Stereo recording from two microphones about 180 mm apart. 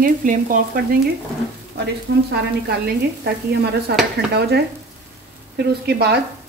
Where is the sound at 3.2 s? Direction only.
65° right (ahead or behind).